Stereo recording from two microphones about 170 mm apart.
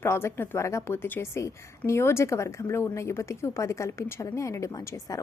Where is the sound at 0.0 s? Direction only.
15° left (ahead or behind).